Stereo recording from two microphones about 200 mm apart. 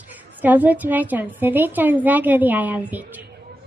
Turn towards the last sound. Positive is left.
turn(degrees=-10)  # may be behind; listen again after turning